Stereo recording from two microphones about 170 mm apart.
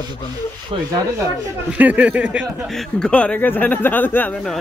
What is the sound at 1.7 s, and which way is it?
Speech, 10° right (ahead or behind).